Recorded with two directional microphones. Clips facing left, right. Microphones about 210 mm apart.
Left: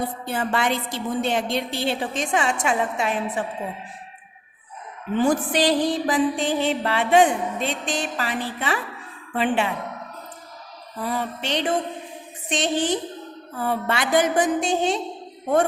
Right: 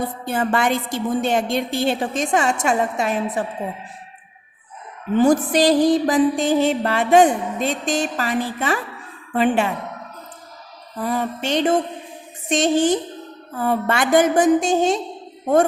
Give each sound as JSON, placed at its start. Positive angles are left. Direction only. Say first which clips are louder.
{"t": 0.3, "sound": "music", "louder": "right 4 dB", "side_deg": -50}
{"t": 5.1, "sound": "music", "louder": "right 5 dB", "side_deg": -40}
{"t": 11.0, "sound": "music", "louder": "right 4 dB", "side_deg": -45}